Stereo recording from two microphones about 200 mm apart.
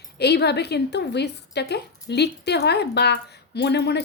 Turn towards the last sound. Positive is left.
turn(degrees=55)  # may be behind; listen again after turning